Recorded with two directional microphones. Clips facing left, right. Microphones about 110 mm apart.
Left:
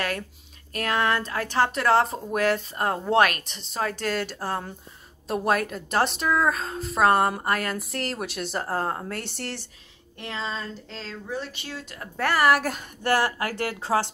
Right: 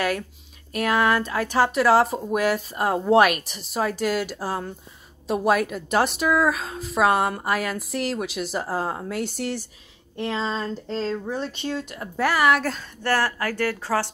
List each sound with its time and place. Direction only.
0.7 s a woman's voice: 10° right (ahead or behind)
10.1 s speech: 20° right (ahead or behind)
10.9 s speech: 35° right (ahead or behind); by 12.1 s 20° right (ahead or behind)
12.2 s a woman's voice: centre (ahead or behind)
12.6 s a woman's voice: 15° left (ahead or behind)